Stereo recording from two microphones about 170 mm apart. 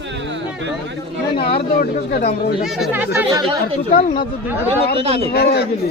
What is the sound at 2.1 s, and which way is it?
Speech, 65° left (ahead or behind).